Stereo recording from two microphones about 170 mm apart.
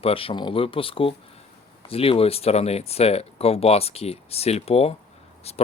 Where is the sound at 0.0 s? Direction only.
35° left (ahead or behind).